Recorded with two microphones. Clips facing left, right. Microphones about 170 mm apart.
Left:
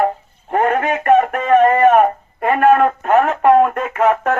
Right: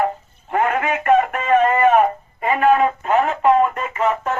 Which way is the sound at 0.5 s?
45° left (ahead or behind).